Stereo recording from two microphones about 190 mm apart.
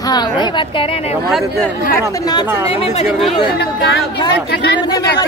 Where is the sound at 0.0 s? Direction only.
20° left (ahead or behind).